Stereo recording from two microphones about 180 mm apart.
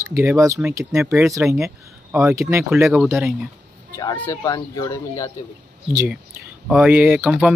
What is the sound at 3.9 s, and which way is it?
Speech, 20° left (ahead or behind).